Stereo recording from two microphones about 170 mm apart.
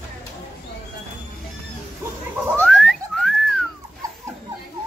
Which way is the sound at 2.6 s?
Centre (ahead or behind).